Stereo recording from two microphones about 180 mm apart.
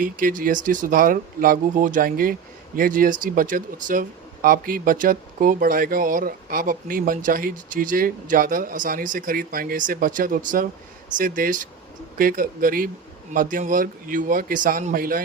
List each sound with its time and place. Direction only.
0.0 s speech: 50° right (ahead or behind)